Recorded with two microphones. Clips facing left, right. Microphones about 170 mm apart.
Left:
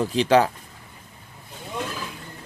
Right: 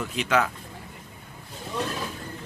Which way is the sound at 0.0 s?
35° left (ahead or behind).